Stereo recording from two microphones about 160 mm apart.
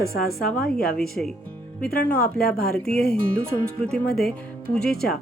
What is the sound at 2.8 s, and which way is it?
A woman's voice, 5° left (ahead or behind).